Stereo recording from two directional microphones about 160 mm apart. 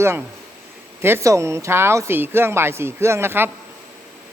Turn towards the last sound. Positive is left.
turn(degrees=-15)  # may be behind; listen again after turning